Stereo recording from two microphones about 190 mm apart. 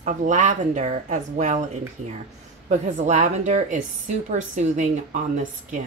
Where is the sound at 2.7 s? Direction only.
35° right (ahead or behind).